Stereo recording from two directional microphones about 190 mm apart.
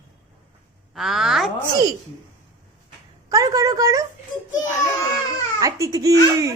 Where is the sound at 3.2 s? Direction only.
15° right (ahead or behind).